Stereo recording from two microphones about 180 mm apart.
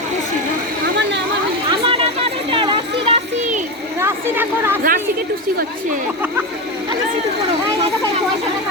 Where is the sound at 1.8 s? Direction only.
30° right (ahead or behind).